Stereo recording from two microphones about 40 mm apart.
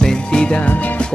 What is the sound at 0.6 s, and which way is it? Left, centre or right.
Music, left.